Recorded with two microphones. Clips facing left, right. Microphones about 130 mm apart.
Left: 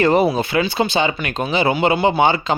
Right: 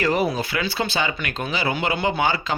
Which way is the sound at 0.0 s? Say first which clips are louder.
Left 6 dB; 25° left (ahead or behind).